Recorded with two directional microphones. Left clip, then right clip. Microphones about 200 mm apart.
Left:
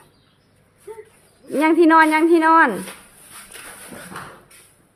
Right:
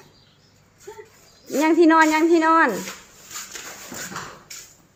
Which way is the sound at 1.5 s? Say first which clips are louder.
Left 2 dB; 10° left (ahead or behind).